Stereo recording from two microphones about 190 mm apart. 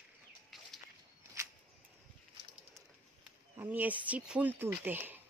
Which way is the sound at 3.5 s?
10° right (ahead or behind).